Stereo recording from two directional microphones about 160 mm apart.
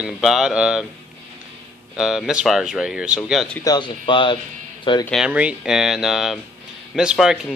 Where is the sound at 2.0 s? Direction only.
5° right (ahead or behind).